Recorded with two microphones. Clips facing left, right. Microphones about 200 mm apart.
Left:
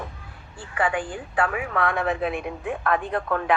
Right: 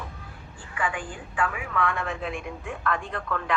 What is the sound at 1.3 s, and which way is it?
A man's voice, 70° left (ahead or behind).